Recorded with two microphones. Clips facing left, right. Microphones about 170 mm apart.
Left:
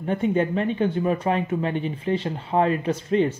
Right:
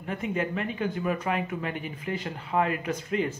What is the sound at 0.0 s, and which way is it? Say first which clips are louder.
Speech: left 8 dB; 30° left (ahead or behind).